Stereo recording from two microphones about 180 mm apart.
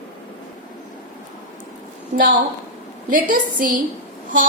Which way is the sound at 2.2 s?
50° right (ahead or behind).